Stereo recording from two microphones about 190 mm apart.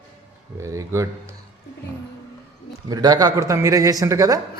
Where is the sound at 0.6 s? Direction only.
15° right (ahead or behind).